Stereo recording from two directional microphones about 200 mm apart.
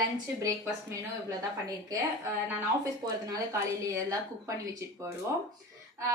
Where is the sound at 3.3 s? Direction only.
15° right (ahead or behind).